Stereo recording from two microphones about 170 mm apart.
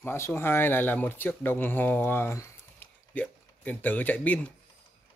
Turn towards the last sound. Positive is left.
turn(degrees=10)  # may be behind; listen again after turning